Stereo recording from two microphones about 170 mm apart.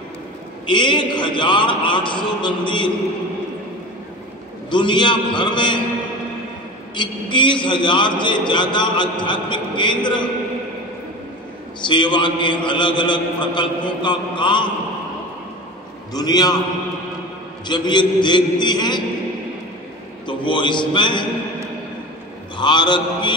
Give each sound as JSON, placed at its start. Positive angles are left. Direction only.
{"t": 0.7, "sound": "a man's voice", "side_deg": 25}
{"t": 4.6, "sound": "a man's voice", "side_deg": 25}
{"t": 7.0, "sound": "a man's voice", "side_deg": 30}
{"t": 11.9, "sound": "a man's voice", "side_deg": 25}
{"t": 16.1, "sound": "a man's voice", "side_deg": 25}
{"t": 17.6, "sound": "a man's voice", "side_deg": 25}
{"t": 20.2, "sound": "a man's voice", "side_deg": 30}
{"t": 22.6, "sound": "a man's voice", "side_deg": 25}